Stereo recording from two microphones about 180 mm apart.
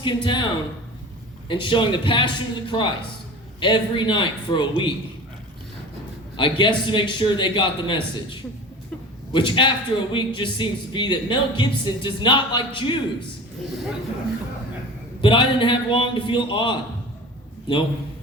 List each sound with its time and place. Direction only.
0.0 s speech: 25° left (ahead or behind)
1.5 s speech: 25° left (ahead or behind)
6.3 s speech: 25° left (ahead or behind)
15.2 s speech: 30° left (ahead or behind)